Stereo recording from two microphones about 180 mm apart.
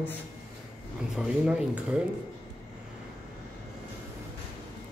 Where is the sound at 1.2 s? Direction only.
5° right (ahead or behind).